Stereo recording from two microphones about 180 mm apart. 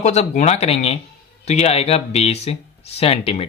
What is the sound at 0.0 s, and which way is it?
Speech, 40° left (ahead or behind).